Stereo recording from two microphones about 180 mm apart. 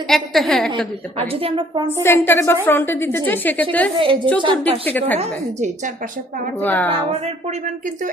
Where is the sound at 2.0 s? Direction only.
15° left (ahead or behind).